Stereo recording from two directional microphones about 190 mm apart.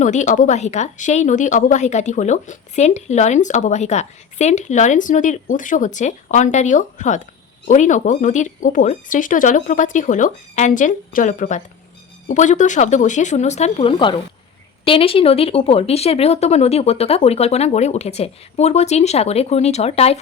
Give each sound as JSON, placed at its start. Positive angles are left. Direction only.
{"t": 0.0, "sound": "speech", "side_deg": 40}